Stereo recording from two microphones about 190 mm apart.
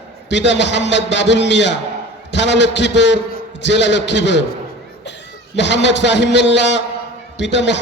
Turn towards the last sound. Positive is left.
turn(degrees=65)  # may be behind; listen again after turning